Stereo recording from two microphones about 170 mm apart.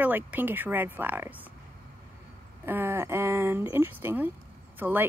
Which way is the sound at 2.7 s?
15° right (ahead or behind).